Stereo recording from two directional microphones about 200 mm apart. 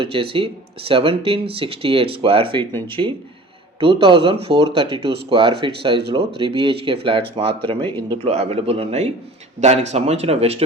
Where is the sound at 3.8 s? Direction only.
25° right (ahead or behind).